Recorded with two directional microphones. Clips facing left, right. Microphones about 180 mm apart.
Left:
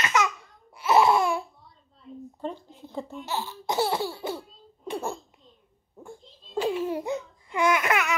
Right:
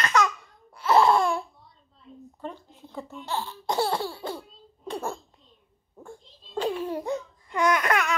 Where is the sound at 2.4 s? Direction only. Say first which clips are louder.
Left 3 dB; 25° left (ahead or behind).